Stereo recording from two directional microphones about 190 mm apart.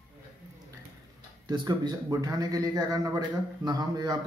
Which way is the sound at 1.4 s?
25° right (ahead or behind).